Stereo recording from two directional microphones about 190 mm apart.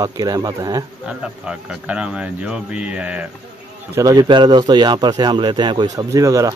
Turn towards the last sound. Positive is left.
turn(degrees=-20)  # may be behind; listen again after turning